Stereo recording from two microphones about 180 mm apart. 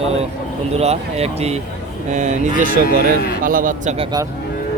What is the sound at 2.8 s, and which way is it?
Speech, 55° left (ahead or behind).